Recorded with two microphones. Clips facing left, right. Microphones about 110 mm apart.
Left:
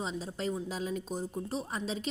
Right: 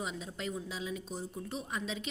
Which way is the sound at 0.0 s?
30° left (ahead or behind).